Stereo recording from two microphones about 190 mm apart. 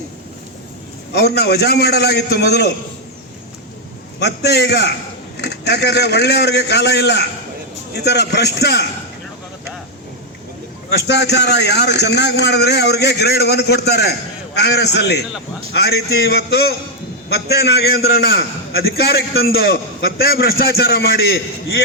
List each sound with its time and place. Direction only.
1.1 s a man's voice: 60° left (ahead or behind)
4.2 s a man's voice: 60° left (ahead or behind)
11.0 s a man's voice: 65° left (ahead or behind)